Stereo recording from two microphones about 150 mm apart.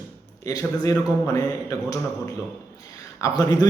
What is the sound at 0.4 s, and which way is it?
A man's voice, 25° left (ahead or behind).